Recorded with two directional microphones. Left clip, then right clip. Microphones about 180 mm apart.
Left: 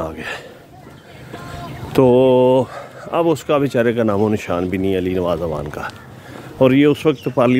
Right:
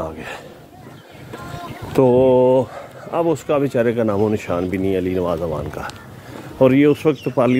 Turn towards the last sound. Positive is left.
turn(degrees=25)  # may be behind; listen again after turning